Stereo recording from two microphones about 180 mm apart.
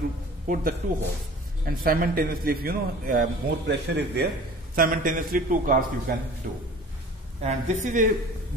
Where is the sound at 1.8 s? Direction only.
55° right (ahead or behind); by 4.2 s 70° right (ahead or behind).